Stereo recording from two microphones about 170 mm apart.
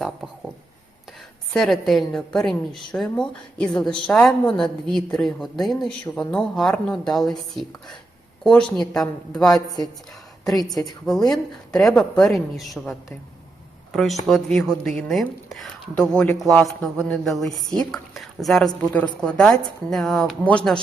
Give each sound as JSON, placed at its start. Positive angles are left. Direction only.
{"t": 1.5, "sound": "a woman's voice", "side_deg": 0}
{"t": 9.6, "sound": "a woman's voice", "side_deg": 20}
{"t": 11.0, "sound": "a woman's voice", "side_deg": 0}